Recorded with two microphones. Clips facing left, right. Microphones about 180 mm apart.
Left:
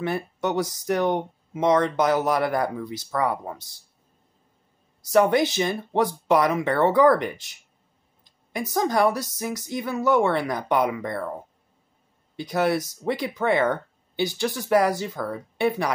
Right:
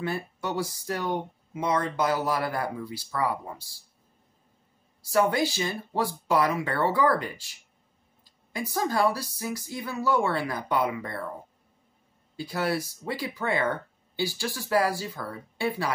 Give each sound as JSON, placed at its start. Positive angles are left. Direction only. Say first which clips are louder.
{"t": 0.0, "sound": "speech", "louder": "left 5 dB", "side_deg": 20}
{"t": 5.0, "sound": "speech", "louder": "left 5 dB", "side_deg": 20}
{"t": 8.5, "sound": "speech", "louder": "left 4 dB", "side_deg": 20}
{"t": 12.4, "sound": "speech", "louder": "left 5 dB", "side_deg": 20}